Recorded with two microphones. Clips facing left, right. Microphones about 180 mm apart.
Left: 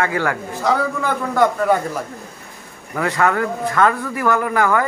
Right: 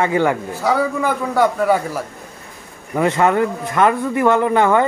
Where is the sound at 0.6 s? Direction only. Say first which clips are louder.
Right 2 dB; 10° right (ahead or behind).